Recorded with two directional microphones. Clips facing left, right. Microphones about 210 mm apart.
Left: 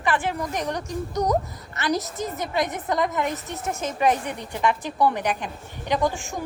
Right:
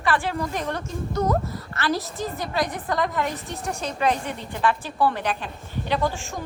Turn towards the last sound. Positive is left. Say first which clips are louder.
# left 1 dB
turn(degrees=15)  # may be behind; listen again after turning